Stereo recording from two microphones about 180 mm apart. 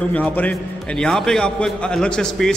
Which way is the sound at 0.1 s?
10° left (ahead or behind).